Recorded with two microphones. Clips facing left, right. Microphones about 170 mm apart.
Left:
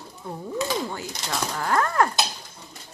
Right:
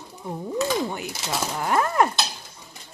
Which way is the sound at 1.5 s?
20° right (ahead or behind).